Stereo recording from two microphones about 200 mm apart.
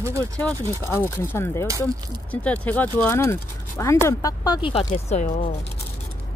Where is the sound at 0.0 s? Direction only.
15° right (ahead or behind).